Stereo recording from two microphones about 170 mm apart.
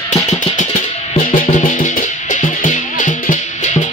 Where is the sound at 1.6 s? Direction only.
50° left (ahead or behind).